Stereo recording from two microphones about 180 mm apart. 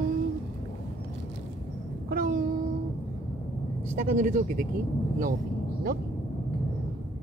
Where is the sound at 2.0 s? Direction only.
50° right (ahead or behind).